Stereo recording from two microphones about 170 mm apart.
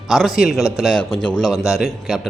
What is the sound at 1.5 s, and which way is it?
Speech, centre (ahead or behind).